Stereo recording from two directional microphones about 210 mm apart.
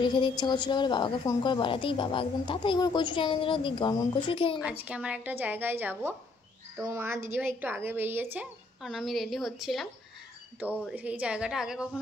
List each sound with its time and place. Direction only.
0.0 s a woman's voice: 20° left (ahead or behind)
4.6 s a woman's voice: 5° right (ahead or behind)